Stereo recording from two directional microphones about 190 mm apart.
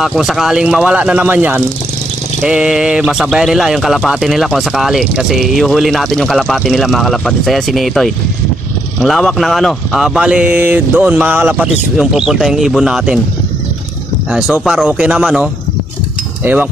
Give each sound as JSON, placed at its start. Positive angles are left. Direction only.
{"t": 0.0, "sound": "speech", "side_deg": 0}
{"t": 14.3, "sound": "speech", "side_deg": -5}